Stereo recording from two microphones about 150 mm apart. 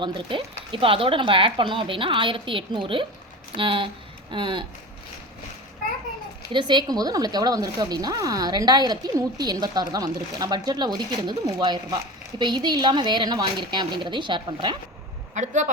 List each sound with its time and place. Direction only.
0.0 s speech: 35° right (ahead or behind)
6.5 s speech: 30° right (ahead or behind)
15.4 s speech: 55° right (ahead or behind)